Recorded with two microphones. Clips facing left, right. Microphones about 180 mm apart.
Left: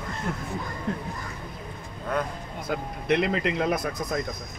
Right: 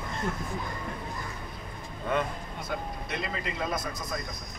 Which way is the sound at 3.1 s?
75° left (ahead or behind).